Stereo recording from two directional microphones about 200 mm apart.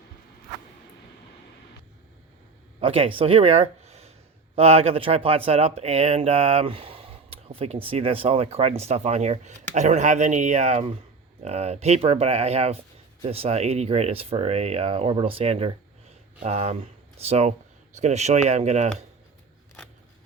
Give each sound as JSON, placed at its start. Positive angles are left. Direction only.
{"t": 2.8, "sound": "speech", "side_deg": -30}